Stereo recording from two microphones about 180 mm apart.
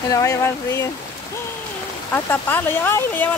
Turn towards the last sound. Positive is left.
turn(degrees=10)  # may be behind; listen again after turning